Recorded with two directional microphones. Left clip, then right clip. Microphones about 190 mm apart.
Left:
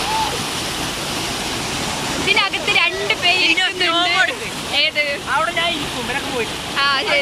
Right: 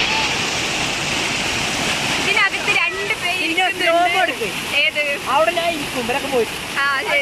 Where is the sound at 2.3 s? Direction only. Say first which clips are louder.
Left 2 dB; 5° left (ahead or behind).